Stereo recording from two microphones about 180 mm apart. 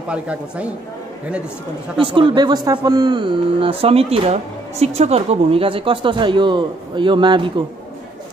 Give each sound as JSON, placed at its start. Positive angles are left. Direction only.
{"t": 0.1, "sound": "speech", "side_deg": -5}
{"t": 2.0, "sound": "a man's voice", "side_deg": -30}